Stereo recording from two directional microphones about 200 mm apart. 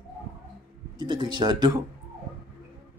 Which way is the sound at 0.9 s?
25° right (ahead or behind).